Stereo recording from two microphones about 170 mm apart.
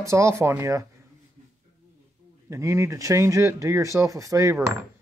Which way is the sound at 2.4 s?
15° right (ahead or behind).